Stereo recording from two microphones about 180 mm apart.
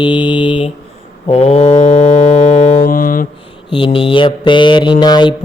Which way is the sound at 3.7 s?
30° left (ahead or behind).